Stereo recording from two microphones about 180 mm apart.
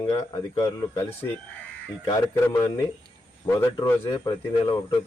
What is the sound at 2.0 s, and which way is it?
A man's voice, 15° left (ahead or behind).